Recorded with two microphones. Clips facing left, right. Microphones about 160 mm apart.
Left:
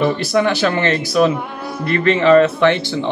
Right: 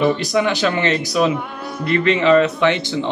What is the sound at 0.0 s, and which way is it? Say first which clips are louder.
Speech: left 1 dB; 15° right (ahead or behind).